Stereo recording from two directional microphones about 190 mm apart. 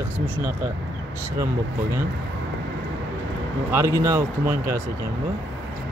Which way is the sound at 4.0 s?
15° right (ahead or behind).